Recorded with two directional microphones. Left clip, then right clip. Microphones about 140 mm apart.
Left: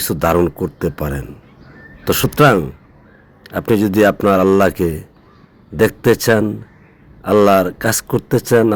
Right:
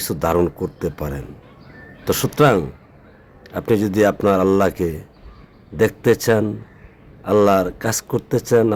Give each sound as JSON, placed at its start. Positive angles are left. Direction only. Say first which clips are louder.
{"t": 0.0, "sound": "a man's voice", "louder": "left 4 dB", "side_deg": 30}